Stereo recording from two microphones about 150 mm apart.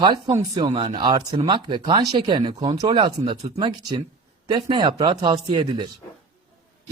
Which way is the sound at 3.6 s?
30° right (ahead or behind).